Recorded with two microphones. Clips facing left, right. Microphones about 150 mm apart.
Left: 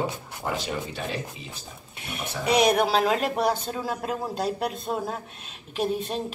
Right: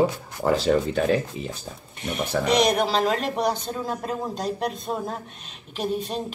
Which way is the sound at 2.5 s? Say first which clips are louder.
Left 1 dB; 10° left (ahead or behind).